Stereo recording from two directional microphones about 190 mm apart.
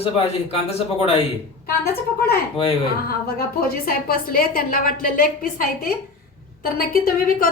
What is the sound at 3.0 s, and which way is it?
A woman's voice, 55° left (ahead or behind).